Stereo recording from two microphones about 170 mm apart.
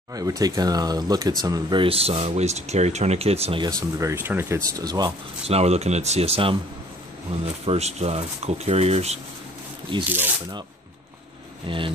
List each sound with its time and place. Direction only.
0.1 s speech: 20° right (ahead or behind); by 3.6 s 35° right (ahead or behind)
3.6 s speech: 15° right (ahead or behind)
5.4 s speech: 35° right (ahead or behind)
10.0 s speech: 10° right (ahead or behind)
11.6 s speech: 30° right (ahead or behind)